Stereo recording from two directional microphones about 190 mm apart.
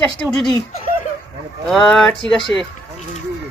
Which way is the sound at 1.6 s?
Centre (ahead or behind).